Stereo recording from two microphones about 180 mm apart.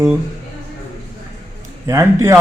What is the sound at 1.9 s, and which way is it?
Speech, 15° right (ahead or behind).